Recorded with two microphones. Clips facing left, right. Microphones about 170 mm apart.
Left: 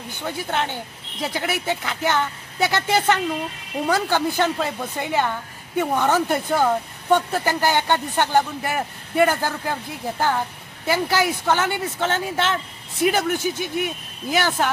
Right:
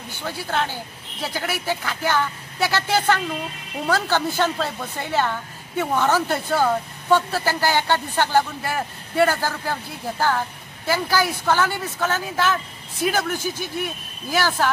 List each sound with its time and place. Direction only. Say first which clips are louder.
0.2 s a woman's voice: even; 20° left (ahead or behind)